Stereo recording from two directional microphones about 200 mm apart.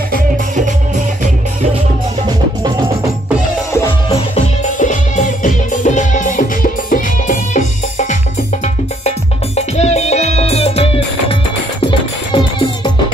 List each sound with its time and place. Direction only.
4.7 s music: 40° left (ahead or behind)
9.6 s music: 35° left (ahead or behind)